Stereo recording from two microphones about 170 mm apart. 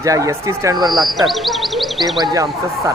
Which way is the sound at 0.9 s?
Centre (ahead or behind).